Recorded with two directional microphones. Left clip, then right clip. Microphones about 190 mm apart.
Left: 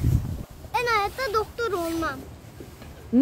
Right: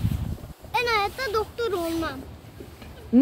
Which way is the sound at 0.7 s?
10° left (ahead or behind).